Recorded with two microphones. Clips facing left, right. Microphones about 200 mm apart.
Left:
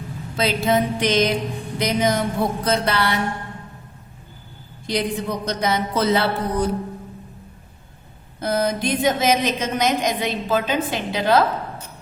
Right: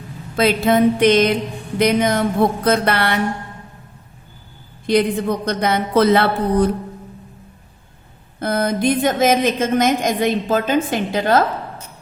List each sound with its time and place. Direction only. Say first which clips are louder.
0.3 s a woman's voice: right 5 dB; 55° right (ahead or behind)
4.9 s a woman's voice: right 7 dB; 55° right (ahead or behind)
8.4 s a woman's voice: right 2 dB; 55° right (ahead or behind)